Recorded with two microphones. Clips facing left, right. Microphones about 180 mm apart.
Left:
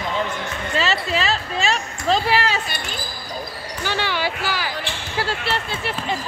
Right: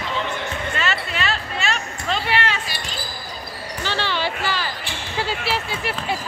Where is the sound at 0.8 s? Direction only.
35° left (ahead or behind).